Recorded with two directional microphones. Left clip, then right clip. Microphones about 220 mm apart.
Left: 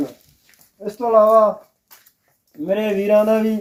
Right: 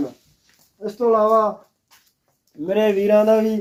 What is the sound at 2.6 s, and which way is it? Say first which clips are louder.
Speech: right 2 dB; 30° right (ahead or behind).